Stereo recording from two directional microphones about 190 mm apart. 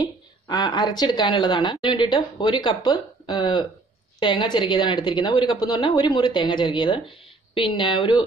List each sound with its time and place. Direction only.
0.0 s a woman's voice: 20° left (ahead or behind)